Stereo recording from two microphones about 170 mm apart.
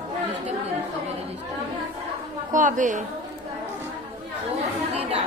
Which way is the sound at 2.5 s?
50° right (ahead or behind).